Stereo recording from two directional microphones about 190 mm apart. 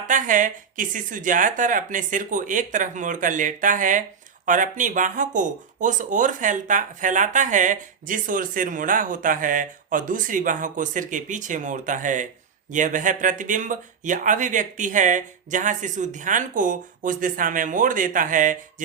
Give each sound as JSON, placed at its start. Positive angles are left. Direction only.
{"t": 0.1, "sound": "speech", "side_deg": -45}